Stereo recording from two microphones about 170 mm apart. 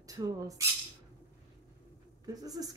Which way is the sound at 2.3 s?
20° right (ahead or behind).